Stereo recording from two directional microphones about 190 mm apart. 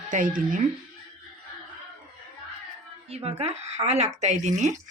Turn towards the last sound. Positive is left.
turn(degrees=-40)  # may be behind; listen again after turning